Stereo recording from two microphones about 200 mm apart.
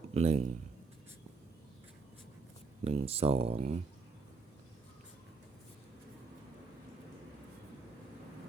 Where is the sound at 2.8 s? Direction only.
30° right (ahead or behind).